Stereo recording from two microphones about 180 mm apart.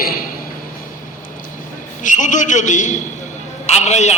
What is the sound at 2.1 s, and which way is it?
A man's voice, 45° left (ahead or behind).